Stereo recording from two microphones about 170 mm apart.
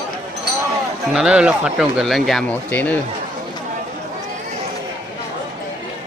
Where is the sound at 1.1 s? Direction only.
5° right (ahead or behind).